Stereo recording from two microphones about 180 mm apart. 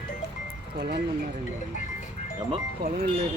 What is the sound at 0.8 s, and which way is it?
Speech, 60° right (ahead or behind).